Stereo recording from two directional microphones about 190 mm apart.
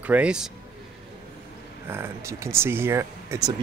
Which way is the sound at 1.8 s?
10° right (ahead or behind).